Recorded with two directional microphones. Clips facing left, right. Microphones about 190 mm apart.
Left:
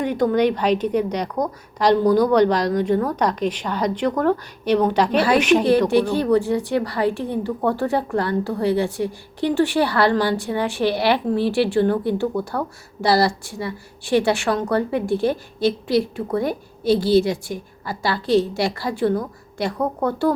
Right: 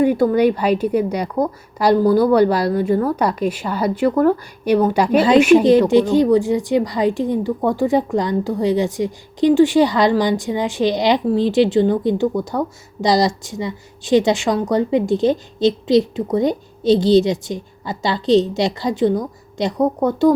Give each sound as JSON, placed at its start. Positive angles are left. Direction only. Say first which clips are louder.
{"t": 0.0, "sound": "a woman's voice", "louder": "right 4 dB", "side_deg": -5}